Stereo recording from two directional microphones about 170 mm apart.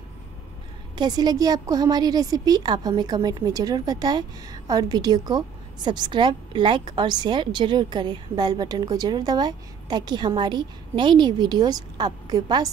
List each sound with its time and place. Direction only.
0.9 s a woman's voice: 25° right (ahead or behind)